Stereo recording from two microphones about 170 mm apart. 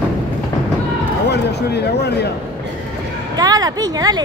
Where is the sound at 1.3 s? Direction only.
75° left (ahead or behind).